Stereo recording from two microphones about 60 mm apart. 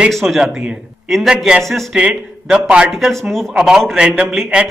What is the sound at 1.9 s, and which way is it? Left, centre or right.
Speech, centre.